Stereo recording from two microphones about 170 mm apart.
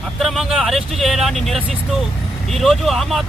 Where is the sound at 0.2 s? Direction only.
Centre (ahead or behind).